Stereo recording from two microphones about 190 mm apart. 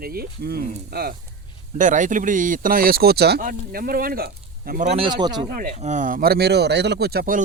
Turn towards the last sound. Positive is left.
turn(degrees=-50)  # may be behind; listen again after turning